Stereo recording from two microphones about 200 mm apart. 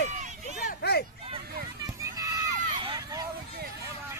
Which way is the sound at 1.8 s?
15° right (ahead or behind).